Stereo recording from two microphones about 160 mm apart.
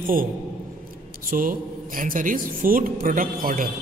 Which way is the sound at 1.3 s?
60° right (ahead or behind).